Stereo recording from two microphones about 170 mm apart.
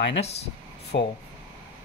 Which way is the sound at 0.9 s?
70° left (ahead or behind).